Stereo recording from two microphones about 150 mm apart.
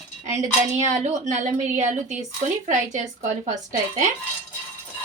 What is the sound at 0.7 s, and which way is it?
A woman's voice, 50° right (ahead or behind).